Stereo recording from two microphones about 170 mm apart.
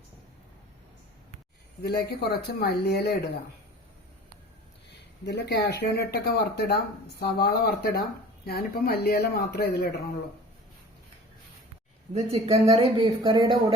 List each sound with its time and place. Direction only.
1.8 s speech: 70° left (ahead or behind)
5.2 s speech: 85° left
12.1 s speech: 40° right (ahead or behind)